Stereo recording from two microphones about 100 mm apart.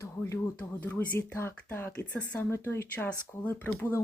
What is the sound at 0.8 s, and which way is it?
Speech, 20° left (ahead or behind).